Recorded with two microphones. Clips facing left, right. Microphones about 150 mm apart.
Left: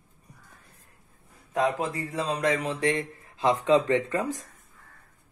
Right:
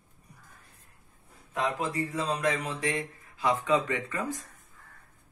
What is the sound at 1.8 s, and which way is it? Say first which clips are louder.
Speech: left 1 dB; 30° left (ahead or behind).